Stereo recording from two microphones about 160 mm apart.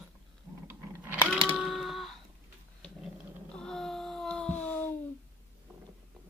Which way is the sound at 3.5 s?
5° left (ahead or behind).